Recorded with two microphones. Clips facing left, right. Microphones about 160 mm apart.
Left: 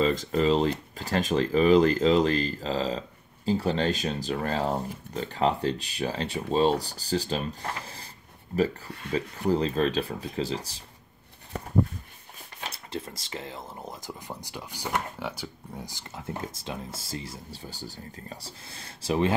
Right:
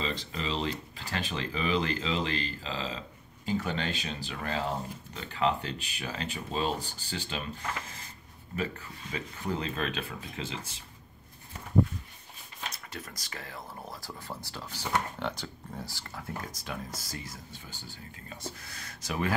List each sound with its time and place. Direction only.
0.0 s speech: 45° left (ahead or behind)
12.6 s speech: 30° left (ahead or behind)